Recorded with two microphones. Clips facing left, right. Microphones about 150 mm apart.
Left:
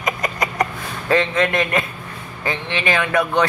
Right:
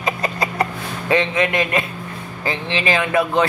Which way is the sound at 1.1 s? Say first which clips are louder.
Even; 20° right (ahead or behind).